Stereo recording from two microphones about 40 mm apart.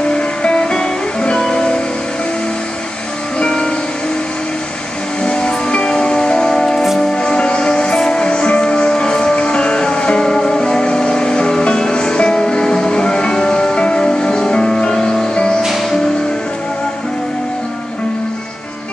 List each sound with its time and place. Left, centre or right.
0.1 s music: left
3.3 s music: left
5.2 s music: left
7.0 s music: left
15.6 s music: centre